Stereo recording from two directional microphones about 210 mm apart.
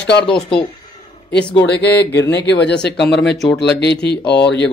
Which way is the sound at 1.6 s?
55° left (ahead or behind).